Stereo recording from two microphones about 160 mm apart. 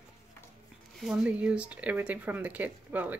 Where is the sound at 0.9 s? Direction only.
5° right (ahead or behind).